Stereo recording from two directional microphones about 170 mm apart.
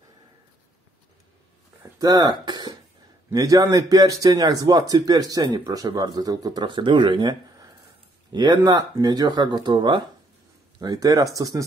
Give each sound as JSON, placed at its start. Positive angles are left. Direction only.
{"t": 1.8, "sound": "throat clearing", "side_deg": -20}
{"t": 3.3, "sound": "a man's voice", "side_deg": -20}